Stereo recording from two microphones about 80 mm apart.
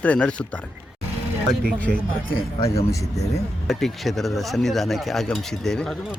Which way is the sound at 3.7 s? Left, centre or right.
Centre.